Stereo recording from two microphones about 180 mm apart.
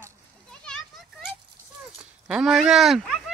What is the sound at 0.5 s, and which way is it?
Children playing, 5° left (ahead or behind).